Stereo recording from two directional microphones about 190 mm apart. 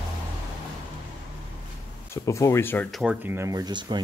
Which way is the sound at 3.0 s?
5° right (ahead or behind).